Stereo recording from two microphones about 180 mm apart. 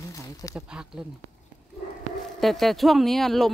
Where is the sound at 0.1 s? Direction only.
20° left (ahead or behind).